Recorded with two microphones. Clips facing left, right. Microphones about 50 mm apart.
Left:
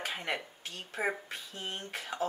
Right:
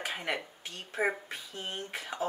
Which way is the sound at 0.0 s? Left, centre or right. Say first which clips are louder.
Right 1 dB; centre.